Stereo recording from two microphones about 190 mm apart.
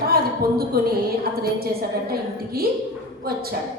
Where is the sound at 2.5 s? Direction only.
55° right (ahead or behind).